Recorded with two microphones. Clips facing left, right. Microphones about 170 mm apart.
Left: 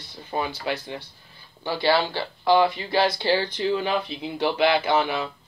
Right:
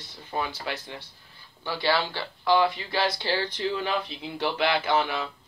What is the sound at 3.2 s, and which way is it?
Speech, 15° left (ahead or behind).